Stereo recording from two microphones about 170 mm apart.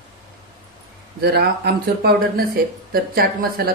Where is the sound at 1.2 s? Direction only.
70° right (ahead or behind).